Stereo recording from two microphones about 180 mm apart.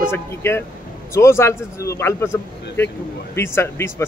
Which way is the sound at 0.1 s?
15° left (ahead or behind).